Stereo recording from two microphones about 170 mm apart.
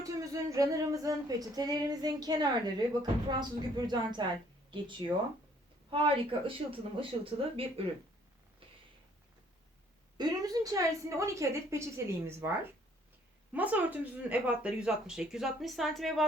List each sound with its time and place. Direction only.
0.0 s speech: 20° right (ahead or behind)
10.2 s a woman's voice: 25° right (ahead or behind); by 16.2 s centre (ahead or behind)